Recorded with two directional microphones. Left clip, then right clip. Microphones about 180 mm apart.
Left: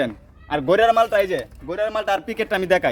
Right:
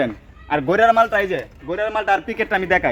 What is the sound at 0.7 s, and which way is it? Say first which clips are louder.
Speech: right 1 dB; 45° left (ahead or behind).